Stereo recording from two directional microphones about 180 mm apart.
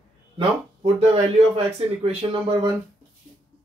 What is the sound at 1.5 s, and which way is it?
Speech, 35° right (ahead or behind).